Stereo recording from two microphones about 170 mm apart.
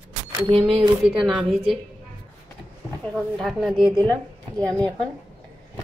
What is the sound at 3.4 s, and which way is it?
Speech, centre (ahead or behind).